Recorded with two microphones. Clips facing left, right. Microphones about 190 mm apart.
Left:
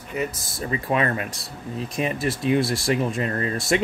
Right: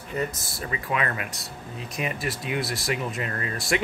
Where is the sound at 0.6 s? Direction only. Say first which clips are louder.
Left 5 dB; 30° left (ahead or behind).